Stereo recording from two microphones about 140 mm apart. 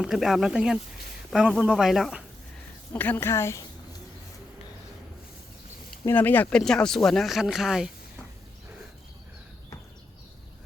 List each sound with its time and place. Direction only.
0.0 s speech: centre (ahead or behind)
2.9 s a woman's voice: 15° left (ahead or behind)
6.1 s a woman's voice: 15° left (ahead or behind); by 7.9 s 5° right (ahead or behind)